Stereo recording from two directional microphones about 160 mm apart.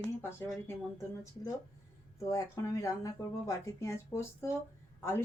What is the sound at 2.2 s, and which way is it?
Speech, 20° left (ahead or behind).